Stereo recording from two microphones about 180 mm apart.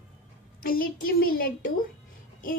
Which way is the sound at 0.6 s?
55° left (ahead or behind).